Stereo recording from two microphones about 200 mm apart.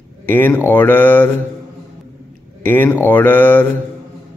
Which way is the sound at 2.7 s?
10° left (ahead or behind).